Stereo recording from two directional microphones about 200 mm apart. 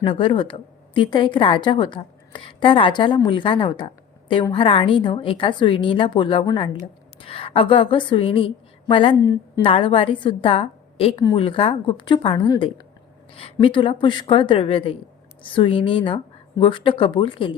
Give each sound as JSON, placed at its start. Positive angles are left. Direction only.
{"t": 0.0, "sound": "a woman's voice", "side_deg": 25}